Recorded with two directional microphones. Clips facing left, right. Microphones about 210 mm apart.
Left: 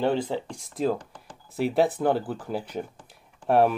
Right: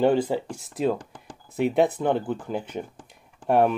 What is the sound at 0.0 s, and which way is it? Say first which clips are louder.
Speech: right 4 dB; 10° right (ahead or behind).